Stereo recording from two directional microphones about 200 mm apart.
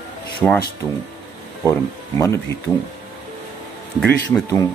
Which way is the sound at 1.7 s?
15° left (ahead or behind).